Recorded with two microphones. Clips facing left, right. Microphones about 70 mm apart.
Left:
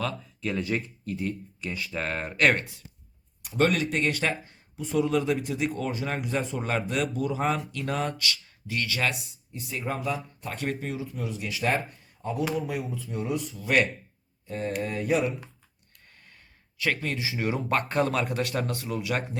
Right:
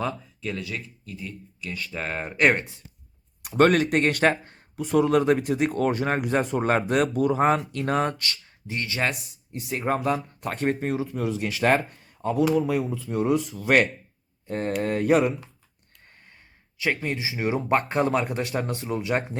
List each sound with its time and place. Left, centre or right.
0.6 s speech: left
1.9 s speech: centre
2.4 s speech: centre
3.6 s speech: right
4.8 s speech: right
9.1 s speech: right
10.6 s speech: right
10.9 s speech: right
13.1 s speech: right
14.4 s mantra: right
16.7 s speech: centre